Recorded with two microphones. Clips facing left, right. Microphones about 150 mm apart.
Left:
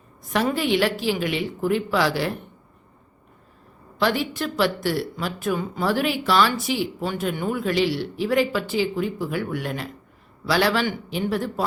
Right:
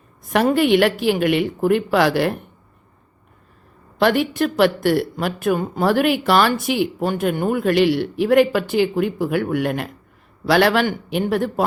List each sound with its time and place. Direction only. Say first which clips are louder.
0.3 s speech: right 6 dB; 60° right (ahead or behind)
4.0 s speech: right 6 dB; 60° right (ahead or behind)